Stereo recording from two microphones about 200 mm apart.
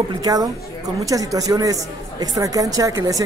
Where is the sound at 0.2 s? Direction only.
20° right (ahead or behind).